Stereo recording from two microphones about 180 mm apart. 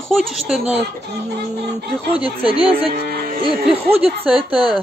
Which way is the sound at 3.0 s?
55° right (ahead or behind).